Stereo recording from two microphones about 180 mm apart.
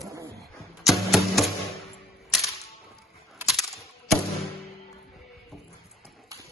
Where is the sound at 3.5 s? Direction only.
Centre (ahead or behind).